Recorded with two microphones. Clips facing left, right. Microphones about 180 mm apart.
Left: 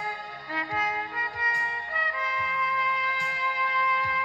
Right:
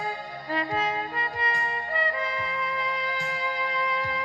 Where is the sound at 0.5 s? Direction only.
30° right (ahead or behind).